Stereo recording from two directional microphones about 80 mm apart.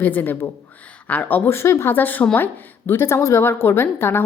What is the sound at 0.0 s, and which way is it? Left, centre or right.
A woman's voice, left.